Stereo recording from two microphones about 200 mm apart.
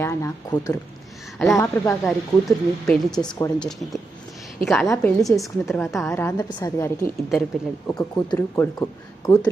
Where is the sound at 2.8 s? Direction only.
Centre (ahead or behind).